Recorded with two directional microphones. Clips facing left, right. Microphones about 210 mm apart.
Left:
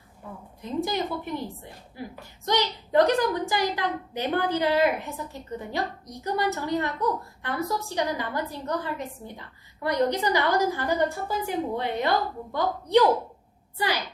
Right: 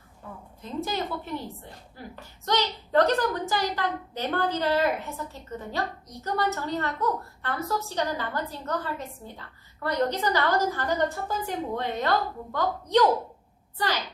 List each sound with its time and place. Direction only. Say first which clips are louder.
0.6 s speech: left 3 dB; 15° left (ahead or behind)